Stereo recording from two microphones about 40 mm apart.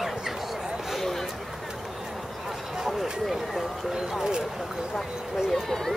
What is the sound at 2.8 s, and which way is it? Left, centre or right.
Speech, centre.